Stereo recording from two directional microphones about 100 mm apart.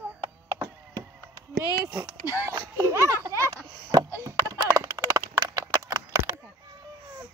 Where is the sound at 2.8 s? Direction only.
30° right (ahead or behind).